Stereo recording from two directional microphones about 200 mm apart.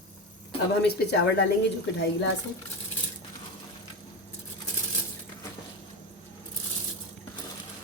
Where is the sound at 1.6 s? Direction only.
60° left (ahead or behind).